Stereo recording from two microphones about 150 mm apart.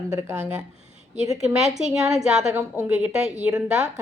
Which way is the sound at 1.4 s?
5° right (ahead or behind).